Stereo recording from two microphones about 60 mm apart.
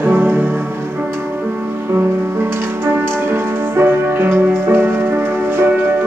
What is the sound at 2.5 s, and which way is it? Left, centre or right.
Music, right.